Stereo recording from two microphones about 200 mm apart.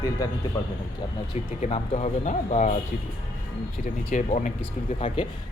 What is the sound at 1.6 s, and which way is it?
Speech, 30° left (ahead or behind).